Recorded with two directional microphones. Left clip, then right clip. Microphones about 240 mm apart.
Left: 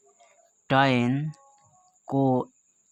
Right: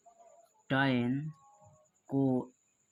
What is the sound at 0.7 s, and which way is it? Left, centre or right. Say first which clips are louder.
Speech: left 9 dB; left.